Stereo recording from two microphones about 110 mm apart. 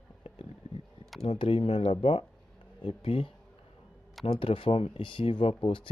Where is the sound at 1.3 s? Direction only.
55° left (ahead or behind).